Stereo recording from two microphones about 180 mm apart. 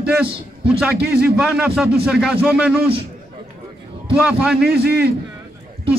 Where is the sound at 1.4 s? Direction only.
5° right (ahead or behind).